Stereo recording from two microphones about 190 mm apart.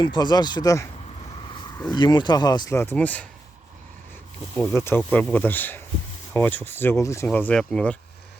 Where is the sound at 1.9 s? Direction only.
25° left (ahead or behind); by 3.2 s 10° left (ahead or behind).